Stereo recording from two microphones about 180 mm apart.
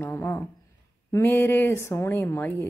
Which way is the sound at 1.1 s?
15° left (ahead or behind).